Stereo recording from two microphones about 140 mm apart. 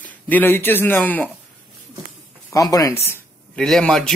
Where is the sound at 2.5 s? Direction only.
25° left (ahead or behind).